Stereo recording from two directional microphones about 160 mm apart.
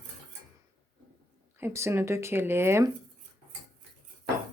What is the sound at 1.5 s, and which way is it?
Speech, 15° right (ahead or behind).